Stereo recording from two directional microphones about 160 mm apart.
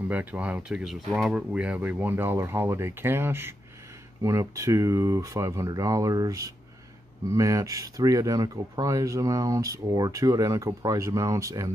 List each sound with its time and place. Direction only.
0.1 s speech: 10° right (ahead or behind)